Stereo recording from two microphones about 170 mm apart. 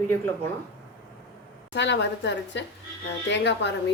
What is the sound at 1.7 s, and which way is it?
A woman's voice, 90° left.